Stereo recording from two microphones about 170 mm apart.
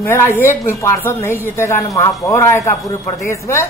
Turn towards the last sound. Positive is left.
turn(degrees=15)  # may be behind; listen again after turning